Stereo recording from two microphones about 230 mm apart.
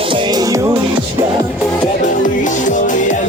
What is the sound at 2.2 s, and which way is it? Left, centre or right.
Music, left.